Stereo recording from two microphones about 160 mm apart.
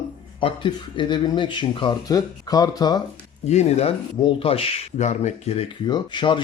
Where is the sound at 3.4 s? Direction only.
45° left (ahead or behind).